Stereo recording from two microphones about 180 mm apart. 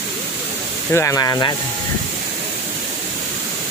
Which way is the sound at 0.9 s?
15° left (ahead or behind).